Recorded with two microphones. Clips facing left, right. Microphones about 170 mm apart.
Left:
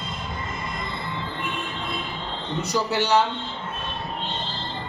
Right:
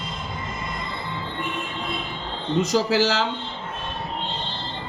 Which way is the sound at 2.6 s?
90° right.